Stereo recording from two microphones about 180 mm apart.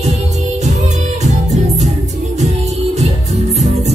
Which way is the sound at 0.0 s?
40° right (ahead or behind).